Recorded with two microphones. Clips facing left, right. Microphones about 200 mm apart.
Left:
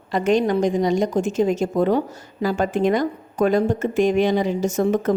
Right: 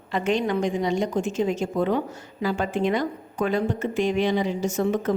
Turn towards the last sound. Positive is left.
turn(degrees=45)  # may be behind; listen again after turning